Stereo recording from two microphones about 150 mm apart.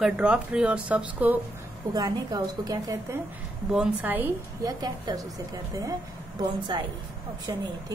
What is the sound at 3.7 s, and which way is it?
Speech, 10° right (ahead or behind).